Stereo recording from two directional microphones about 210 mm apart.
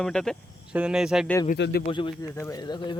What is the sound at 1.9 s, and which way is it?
Speech, 25° left (ahead or behind).